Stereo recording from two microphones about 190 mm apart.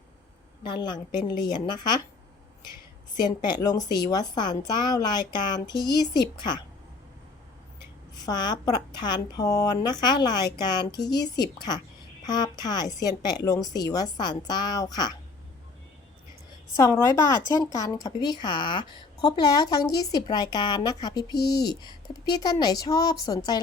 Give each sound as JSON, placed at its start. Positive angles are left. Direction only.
{"t": 0.6, "sound": "speech", "side_deg": 25}
{"t": 3.2, "sound": "speech", "side_deg": 25}
{"t": 8.2, "sound": "speech", "side_deg": 20}
{"t": 12.2, "sound": "speech", "side_deg": 20}
{"t": 16.7, "sound": "speech", "side_deg": 15}